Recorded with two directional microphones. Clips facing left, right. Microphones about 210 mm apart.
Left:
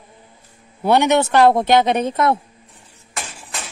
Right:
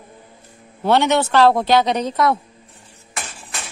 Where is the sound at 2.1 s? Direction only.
25° left (ahead or behind).